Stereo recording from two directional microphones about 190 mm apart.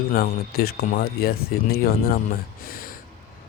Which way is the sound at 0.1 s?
55° left (ahead or behind).